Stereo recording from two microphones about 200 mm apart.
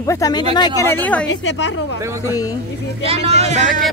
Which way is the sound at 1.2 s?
65° left (ahead or behind).